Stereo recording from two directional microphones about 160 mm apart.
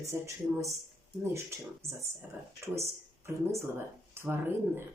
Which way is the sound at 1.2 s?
20° right (ahead or behind).